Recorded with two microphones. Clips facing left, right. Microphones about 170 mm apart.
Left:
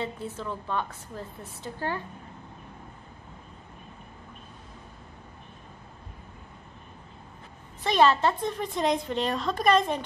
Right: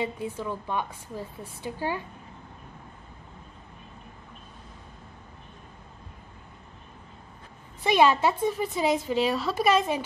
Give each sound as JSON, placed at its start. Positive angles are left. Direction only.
{"t": 0.0, "sound": "a woman's voice", "side_deg": -10}
{"t": 7.8, "sound": "a woman's voice", "side_deg": -10}